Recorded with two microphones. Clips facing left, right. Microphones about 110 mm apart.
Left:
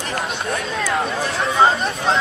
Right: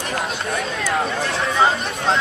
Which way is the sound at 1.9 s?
Centre (ahead or behind).